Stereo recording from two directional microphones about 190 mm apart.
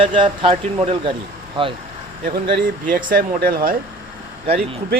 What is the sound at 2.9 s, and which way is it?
Speech, 50° right (ahead or behind).